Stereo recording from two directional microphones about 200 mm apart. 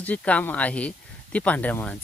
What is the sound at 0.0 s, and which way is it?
Speech, 5° left (ahead or behind).